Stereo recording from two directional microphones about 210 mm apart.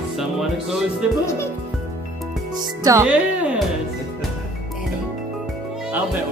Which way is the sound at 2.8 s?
15° right (ahead or behind).